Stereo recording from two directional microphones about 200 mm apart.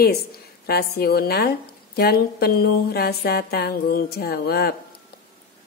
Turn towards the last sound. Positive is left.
turn(degrees=50)  # may be behind; listen again after turning